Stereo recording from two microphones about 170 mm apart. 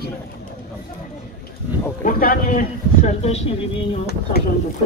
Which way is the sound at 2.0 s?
55° left (ahead or behind).